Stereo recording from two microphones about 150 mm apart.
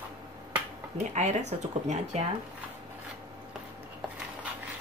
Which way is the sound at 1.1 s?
50° right (ahead or behind).